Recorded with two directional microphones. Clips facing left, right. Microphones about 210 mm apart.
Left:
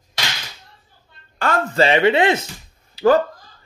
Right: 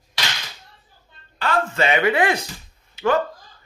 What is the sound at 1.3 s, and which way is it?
Speech, 45° left (ahead or behind).